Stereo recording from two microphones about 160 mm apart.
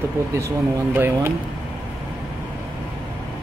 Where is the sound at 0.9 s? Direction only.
15° right (ahead or behind).